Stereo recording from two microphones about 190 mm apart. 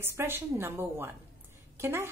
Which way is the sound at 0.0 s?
10° right (ahead or behind).